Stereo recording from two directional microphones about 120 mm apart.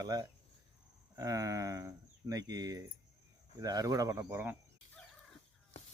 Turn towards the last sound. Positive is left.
turn(degrees=-15)  # may be behind; listen again after turning